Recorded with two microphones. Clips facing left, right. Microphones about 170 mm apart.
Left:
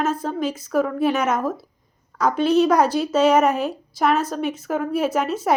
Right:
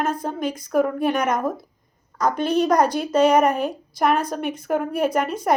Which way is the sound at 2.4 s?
50° right (ahead or behind).